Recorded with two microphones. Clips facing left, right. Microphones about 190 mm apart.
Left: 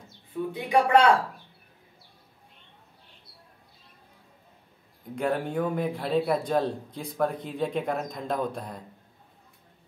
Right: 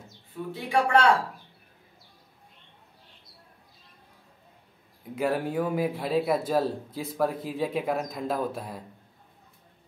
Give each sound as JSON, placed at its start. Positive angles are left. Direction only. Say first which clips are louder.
{"t": 0.5, "sound": "speech", "louder": "left 2 dB", "side_deg": 20}
{"t": 5.1, "sound": "speech", "louder": "right 1 dB", "side_deg": -5}